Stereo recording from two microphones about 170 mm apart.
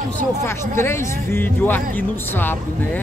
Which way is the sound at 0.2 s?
15° left (ahead or behind).